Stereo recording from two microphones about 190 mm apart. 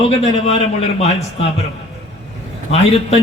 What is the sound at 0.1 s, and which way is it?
A man's voice, 30° left (ahead or behind).